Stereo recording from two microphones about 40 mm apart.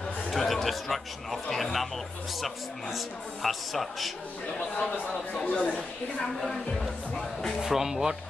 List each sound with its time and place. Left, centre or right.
0.4 s speech: centre
3.4 s speech: centre
5.4 s speech: left
7.6 s speech: centre